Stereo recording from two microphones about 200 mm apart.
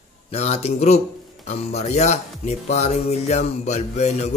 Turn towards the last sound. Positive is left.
turn(degrees=30)  # may be behind; listen again after turning